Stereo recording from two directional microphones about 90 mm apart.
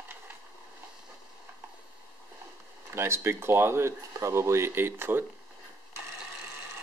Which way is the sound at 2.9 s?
30° right (ahead or behind).